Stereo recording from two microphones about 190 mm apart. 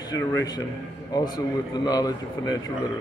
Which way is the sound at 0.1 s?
20° left (ahead or behind).